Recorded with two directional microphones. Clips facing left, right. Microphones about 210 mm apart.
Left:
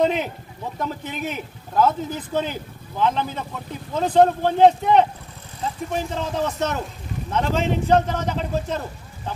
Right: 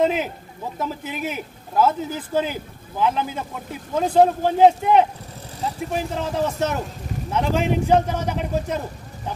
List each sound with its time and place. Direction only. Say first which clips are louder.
0.0 s a man's voice: even; 5° right (ahead or behind)